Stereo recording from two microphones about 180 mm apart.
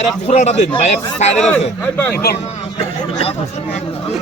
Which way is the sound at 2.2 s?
60° left (ahead or behind).